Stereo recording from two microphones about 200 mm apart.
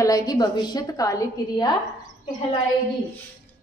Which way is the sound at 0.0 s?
20° left (ahead or behind).